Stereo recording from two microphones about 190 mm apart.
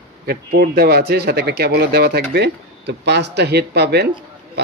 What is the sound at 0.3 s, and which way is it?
A man's voice, 55° right (ahead or behind).